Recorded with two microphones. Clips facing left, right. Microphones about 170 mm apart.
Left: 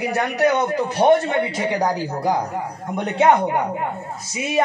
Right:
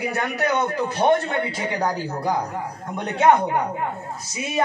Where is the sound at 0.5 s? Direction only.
20° left (ahead or behind).